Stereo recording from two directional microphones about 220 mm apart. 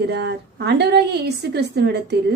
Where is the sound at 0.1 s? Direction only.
50° right (ahead or behind).